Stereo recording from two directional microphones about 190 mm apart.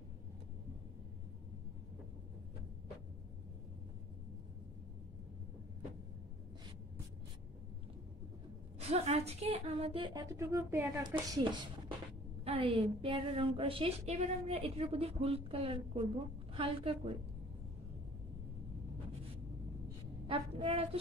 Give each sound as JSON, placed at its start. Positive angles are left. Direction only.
{"t": 8.7, "sound": "a woman's voice", "side_deg": -35}
{"t": 20.2, "sound": "a woman's voice", "side_deg": -30}